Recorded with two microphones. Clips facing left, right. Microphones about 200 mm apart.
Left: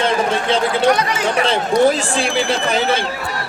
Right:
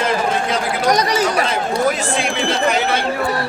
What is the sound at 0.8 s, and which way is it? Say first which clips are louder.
Speech: right 4 dB; 40° right (ahead or behind).